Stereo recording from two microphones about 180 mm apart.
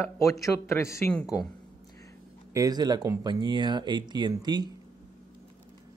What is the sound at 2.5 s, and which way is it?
Speech, 20° right (ahead or behind).